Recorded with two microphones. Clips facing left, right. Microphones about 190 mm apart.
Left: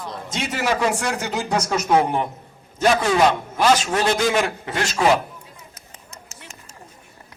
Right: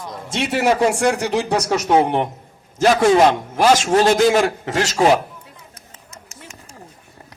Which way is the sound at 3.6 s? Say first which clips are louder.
Right 5 dB; 40° right (ahead or behind).